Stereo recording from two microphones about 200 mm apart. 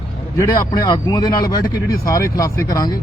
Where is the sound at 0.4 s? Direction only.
20° left (ahead or behind).